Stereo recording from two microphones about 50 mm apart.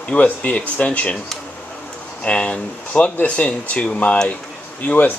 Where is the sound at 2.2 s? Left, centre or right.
Left.